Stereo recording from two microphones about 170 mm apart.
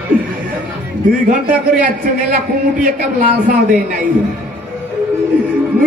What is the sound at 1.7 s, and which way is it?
Speech, 55° right (ahead or behind).